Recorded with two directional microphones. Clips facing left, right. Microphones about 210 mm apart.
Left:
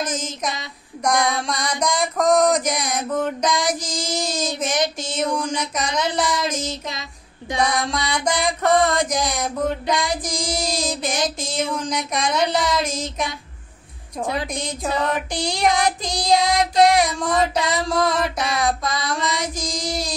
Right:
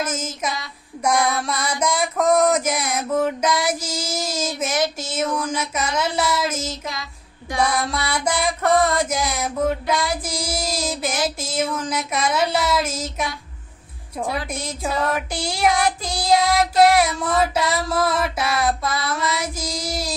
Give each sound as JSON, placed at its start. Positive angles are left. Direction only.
{"t": 0.0, "sound": "music", "side_deg": -5}
{"t": 7.5, "sound": "a sound", "side_deg": 20}
{"t": 7.9, "sound": "music", "side_deg": -5}
{"t": 14.5, "sound": "music", "side_deg": -5}
{"t": 17.6, "sound": "a sound", "side_deg": 20}
{"t": 17.8, "sound": "music", "side_deg": -5}
{"t": 19.0, "sound": "child singing", "side_deg": -5}